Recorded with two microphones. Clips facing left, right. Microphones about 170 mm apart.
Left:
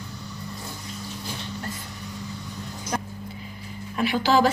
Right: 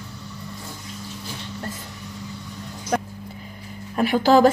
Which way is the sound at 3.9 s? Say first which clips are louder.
Right 5 dB; 45° right (ahead or behind).